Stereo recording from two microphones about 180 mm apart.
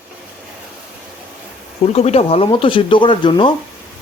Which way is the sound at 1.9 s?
35° left (ahead or behind).